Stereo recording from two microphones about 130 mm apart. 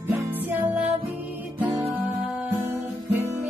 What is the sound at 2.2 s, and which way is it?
Music, 15° right (ahead or behind).